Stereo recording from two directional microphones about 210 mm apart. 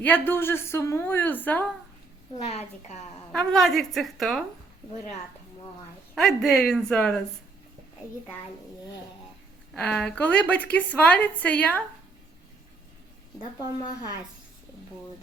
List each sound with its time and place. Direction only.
0.0 s a woman's voice: 10° left (ahead or behind)
2.4 s a woman's voice: 30° left (ahead or behind)
3.3 s a woman's voice: centre (ahead or behind)
6.1 s a woman's voice: centre (ahead or behind)
9.7 s a woman's voice: 5° left (ahead or behind)